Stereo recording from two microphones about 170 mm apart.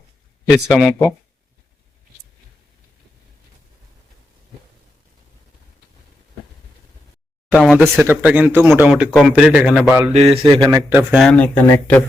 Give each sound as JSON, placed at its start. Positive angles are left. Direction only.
{"t": 0.5, "sound": "a man's voice", "side_deg": 0}
{"t": 7.5, "sound": "a man's voice", "side_deg": 0}
{"t": 10.1, "sound": "speech", "side_deg": -35}
{"t": 11.2, "sound": "speech", "side_deg": 5}